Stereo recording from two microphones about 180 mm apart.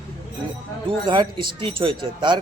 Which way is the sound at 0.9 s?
25° right (ahead or behind).